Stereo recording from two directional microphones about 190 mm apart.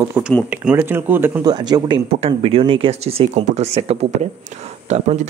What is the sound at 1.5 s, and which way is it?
Speech, 25° right (ahead or behind).